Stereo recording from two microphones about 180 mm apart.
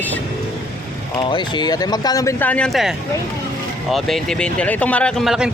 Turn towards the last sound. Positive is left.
turn(degrees=0)  # may be behind; listen again after turning